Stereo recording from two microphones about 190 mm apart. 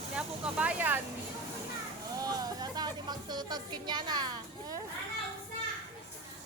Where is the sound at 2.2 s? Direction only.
20° right (ahead or behind).